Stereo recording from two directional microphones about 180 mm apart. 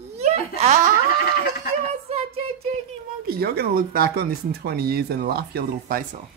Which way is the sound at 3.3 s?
55° right (ahead or behind).